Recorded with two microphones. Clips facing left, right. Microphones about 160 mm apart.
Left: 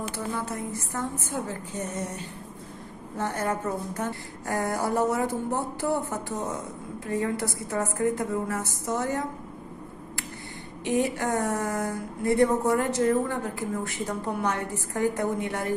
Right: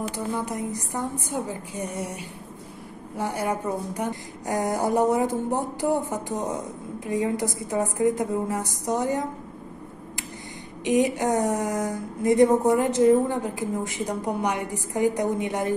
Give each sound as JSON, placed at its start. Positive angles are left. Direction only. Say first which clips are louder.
{"t": 0.1, "sound": "a woman's voice", "louder": "right 3 dB", "side_deg": -15}
{"t": 10.8, "sound": "a woman's voice", "louder": "right 4 dB", "side_deg": -15}